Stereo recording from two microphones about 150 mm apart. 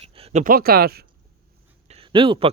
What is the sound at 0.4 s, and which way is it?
Speech, 80° right.